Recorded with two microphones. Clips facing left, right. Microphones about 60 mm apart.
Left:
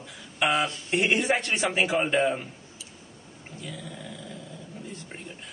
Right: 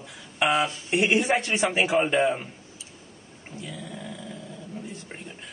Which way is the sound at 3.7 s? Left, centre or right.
Centre.